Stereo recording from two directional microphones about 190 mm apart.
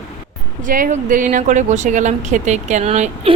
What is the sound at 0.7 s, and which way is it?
Speech, 45° right (ahead or behind).